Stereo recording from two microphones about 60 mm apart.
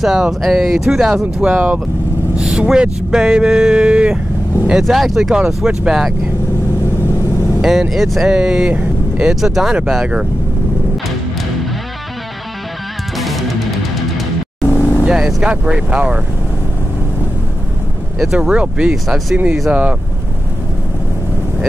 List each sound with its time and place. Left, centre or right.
0.0 s speech: centre
1.5 s speech: right
2.3 s vehicle: centre
2.6 s speech: centre
4.6 s speech: centre
7.9 s speech: centre
13.2 s music: centre
14.8 s vehicle: left
15.0 s speech: centre
18.2 s speech: centre
18.5 s speech: centre
19.0 s speech: centre
19.7 s speech: right